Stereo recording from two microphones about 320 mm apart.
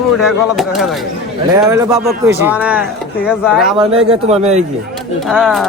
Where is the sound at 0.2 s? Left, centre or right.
Centre.